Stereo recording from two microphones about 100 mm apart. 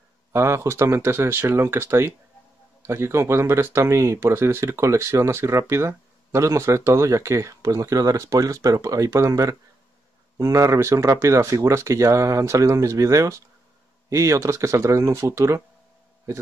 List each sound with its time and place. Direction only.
0.3 s speech: 25° right (ahead or behind)